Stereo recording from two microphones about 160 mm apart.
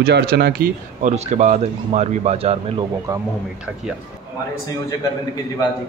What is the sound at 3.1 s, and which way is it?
Speech, 20° right (ahead or behind).